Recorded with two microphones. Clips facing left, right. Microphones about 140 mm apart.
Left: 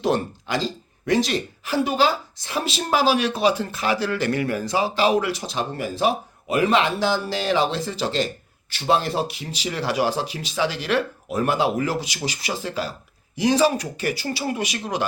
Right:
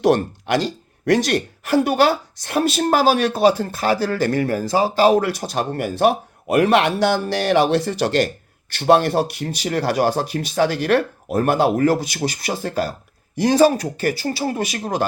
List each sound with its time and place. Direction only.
0.0 s speech: 65° right (ahead or behind); by 15.0 s 45° right (ahead or behind)